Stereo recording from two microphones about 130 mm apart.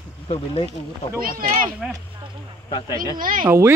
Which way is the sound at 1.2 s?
90° right.